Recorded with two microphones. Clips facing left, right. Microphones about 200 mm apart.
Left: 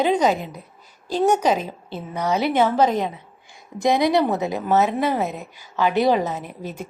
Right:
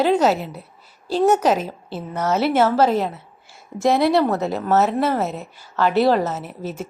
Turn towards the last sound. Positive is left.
turn(degrees=-5)  # may be behind; listen again after turning